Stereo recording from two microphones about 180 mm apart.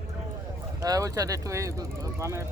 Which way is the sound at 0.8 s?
20° right (ahead or behind).